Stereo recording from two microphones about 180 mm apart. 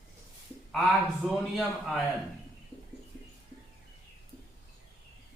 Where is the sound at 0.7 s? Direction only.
Centre (ahead or behind).